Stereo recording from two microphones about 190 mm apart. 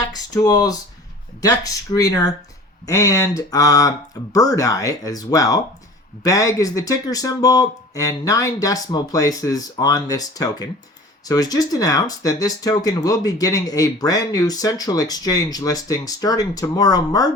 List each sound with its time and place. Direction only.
0.1 s speech: 20° left (ahead or behind)